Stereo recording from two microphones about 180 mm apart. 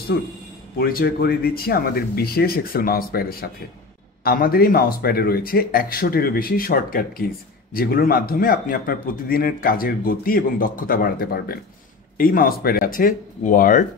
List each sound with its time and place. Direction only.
0.1 s a man's voice: 60° left (ahead or behind)